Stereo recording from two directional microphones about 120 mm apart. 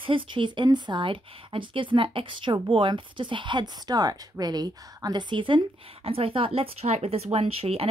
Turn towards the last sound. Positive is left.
turn(degrees=-55)  # may be behind; listen again after turning